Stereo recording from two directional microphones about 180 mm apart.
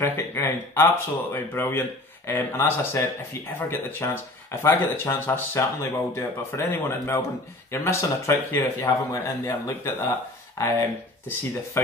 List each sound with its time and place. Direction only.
0.0 s speech: 15° left (ahead or behind)
11.7 s speech: 15° left (ahead or behind)